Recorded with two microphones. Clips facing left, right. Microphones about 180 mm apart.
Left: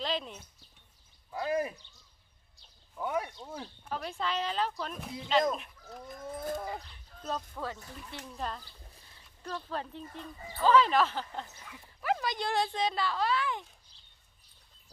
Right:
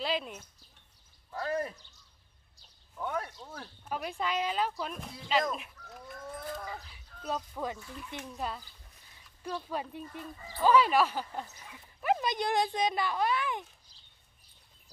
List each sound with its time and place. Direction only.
0.0 s speech: 10° right (ahead or behind)
1.4 s speech: 10° left (ahead or behind)
3.0 s speech: 10° left (ahead or behind)
3.8 s speech: 15° right (ahead or behind)
6.1 s speech: 20° left (ahead or behind)
6.8 s speech: 5° right (ahead or behind)